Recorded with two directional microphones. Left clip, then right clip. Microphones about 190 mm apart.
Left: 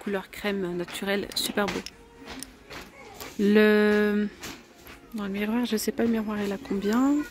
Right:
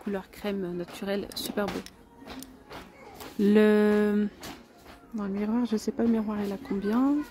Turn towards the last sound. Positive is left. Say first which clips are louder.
# left 2 dB
turn(degrees=0)  # may be behind; listen again after turning